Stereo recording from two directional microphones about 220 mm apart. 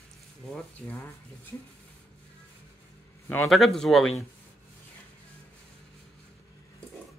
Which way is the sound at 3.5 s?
Centre (ahead or behind).